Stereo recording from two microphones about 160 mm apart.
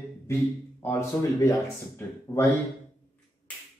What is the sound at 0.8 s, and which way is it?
Speech, 15° left (ahead or behind).